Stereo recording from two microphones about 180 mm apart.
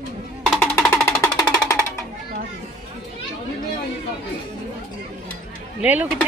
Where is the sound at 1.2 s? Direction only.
20° left (ahead or behind).